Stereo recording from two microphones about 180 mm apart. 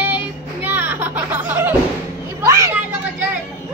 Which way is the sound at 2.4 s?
15° right (ahead or behind).